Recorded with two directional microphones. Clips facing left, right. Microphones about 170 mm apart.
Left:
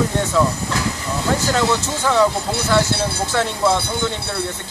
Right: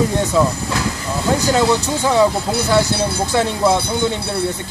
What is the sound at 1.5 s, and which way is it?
Speech, 15° right (ahead or behind).